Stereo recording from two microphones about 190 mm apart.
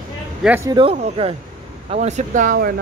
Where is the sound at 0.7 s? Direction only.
25° right (ahead or behind).